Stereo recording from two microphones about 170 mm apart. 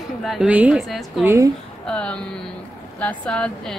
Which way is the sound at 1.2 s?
15° right (ahead or behind).